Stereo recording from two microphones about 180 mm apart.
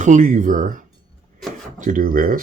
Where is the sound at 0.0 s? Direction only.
45° right (ahead or behind).